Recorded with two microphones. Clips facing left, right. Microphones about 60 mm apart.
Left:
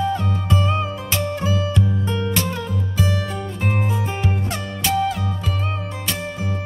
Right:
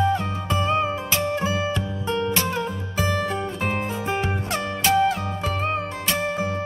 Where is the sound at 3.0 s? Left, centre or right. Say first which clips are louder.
Right 2 dB; right.